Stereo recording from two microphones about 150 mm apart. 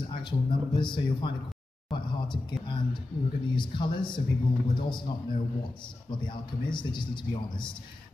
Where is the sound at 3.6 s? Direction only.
30° left (ahead or behind).